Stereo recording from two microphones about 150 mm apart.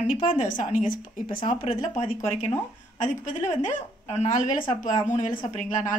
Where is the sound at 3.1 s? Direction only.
60° left (ahead or behind).